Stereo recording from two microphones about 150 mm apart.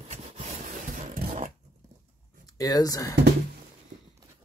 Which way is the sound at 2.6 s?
25° left (ahead or behind).